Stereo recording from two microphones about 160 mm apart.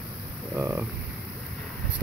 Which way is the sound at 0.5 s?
15° right (ahead or behind).